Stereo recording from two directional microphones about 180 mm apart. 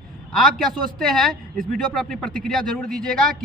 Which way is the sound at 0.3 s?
Centre (ahead or behind).